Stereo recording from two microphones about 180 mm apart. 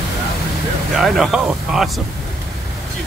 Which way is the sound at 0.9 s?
Centre (ahead or behind).